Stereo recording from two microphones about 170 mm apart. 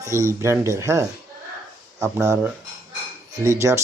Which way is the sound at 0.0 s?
15° right (ahead or behind).